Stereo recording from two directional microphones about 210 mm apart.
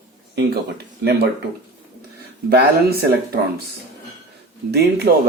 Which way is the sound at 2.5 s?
45° right (ahead or behind).